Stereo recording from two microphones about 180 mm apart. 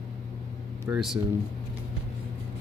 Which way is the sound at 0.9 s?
Centre (ahead or behind).